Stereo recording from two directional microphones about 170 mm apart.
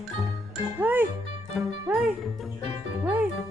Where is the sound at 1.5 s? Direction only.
Centre (ahead or behind).